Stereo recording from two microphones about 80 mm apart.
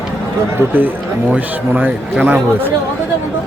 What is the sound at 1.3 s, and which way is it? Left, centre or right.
A man's voice, right.